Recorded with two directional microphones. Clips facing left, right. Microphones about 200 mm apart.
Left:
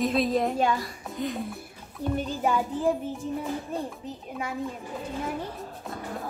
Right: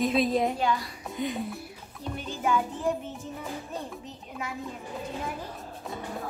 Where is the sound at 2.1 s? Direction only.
40° left (ahead or behind).